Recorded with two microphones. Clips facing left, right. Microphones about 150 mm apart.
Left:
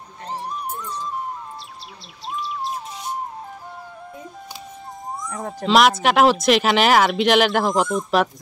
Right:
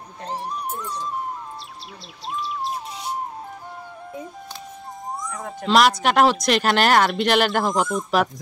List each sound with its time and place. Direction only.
0.3 s a sound: centre (ahead or behind)
2.2 s bird: centre (ahead or behind)
5.7 s speech: centre (ahead or behind)